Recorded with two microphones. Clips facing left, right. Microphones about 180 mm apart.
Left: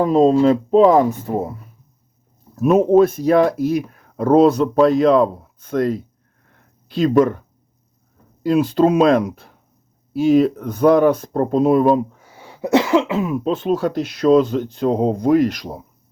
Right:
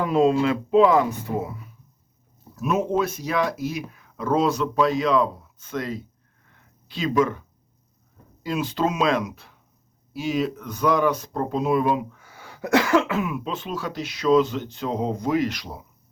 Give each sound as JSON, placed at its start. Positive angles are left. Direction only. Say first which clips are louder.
{"t": 0.0, "sound": "speech", "louder": "left 6 dB", "side_deg": 40}
{"t": 8.4, "sound": "speech", "louder": "left 10 dB", "side_deg": 50}
{"t": 12.2, "sound": "speech", "louder": "left 6 dB", "side_deg": 25}